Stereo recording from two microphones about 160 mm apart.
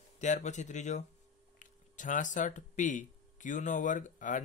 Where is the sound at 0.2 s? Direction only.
50° left (ahead or behind).